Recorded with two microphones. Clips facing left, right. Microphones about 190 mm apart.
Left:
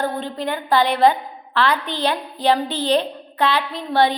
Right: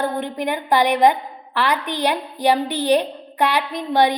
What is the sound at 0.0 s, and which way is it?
A woman's voice, 15° right (ahead or behind).